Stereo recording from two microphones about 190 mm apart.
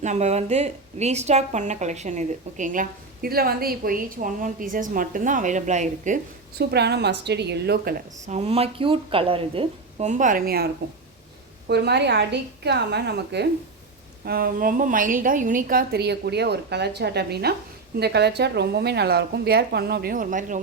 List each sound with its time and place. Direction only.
0.0 s a woman's voice: 35° right (ahead or behind)
6.6 s a woman's voice: 60° right (ahead or behind)
8.2 s a woman's voice: 35° right (ahead or behind); by 10.7 s 55° right (ahead or behind)
11.7 s a woman's voice: 60° right (ahead or behind); by 20.6 s 45° right (ahead or behind)